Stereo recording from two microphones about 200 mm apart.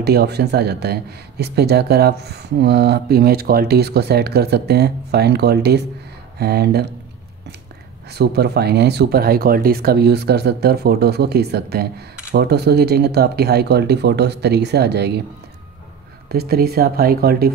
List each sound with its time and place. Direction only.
0.0 s speech: 55° right (ahead or behind)
8.1 s speech: 55° right (ahead or behind)
16.3 s speech: 50° right (ahead or behind)